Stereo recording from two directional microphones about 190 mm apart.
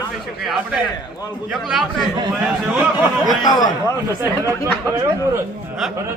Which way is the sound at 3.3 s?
20° left (ahead or behind).